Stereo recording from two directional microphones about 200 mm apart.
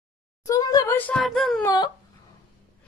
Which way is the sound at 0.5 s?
20° left (ahead or behind).